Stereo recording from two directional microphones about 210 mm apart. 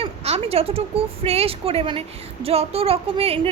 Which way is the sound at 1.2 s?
30° right (ahead or behind).